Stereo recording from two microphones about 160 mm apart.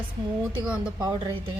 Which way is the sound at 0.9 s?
25° right (ahead or behind).